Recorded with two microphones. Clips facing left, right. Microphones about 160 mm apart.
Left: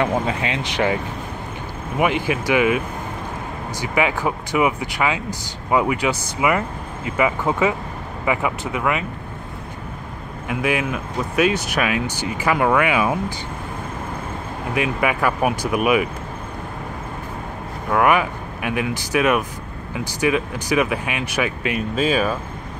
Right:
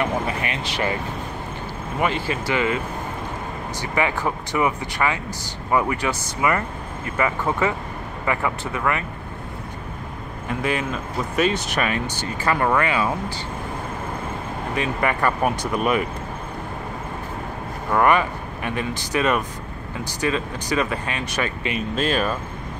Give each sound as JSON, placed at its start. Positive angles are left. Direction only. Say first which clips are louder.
{"t": 0.5, "sound": "speech", "louder": "left 4 dB", "side_deg": 20}
{"t": 2.0, "sound": "speech", "louder": "left 4 dB", "side_deg": 15}
{"t": 3.8, "sound": "speech", "louder": "left 2 dB", "side_deg": 10}
{"t": 10.5, "sound": "speech", "louder": "left 2 dB", "side_deg": 5}
{"t": 14.7, "sound": "speech", "louder": "left 2 dB", "side_deg": 10}
{"t": 17.8, "sound": "speech", "louder": "left 1 dB", "side_deg": 5}